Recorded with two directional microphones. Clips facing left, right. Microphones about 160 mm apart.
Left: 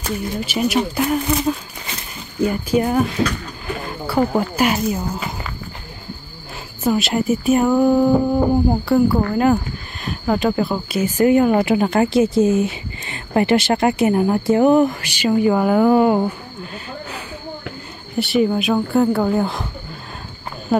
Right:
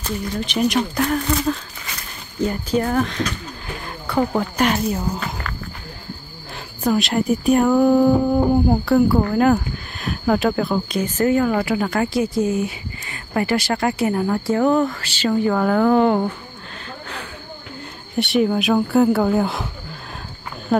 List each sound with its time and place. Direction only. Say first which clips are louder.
0.4 s speech: even; 5° left (ahead or behind)
6.8 s speech: left 1 dB; centre (ahead or behind)
18.1 s speech: left 1 dB; centre (ahead or behind)